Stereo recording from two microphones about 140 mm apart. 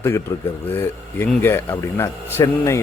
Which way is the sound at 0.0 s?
15° left (ahead or behind).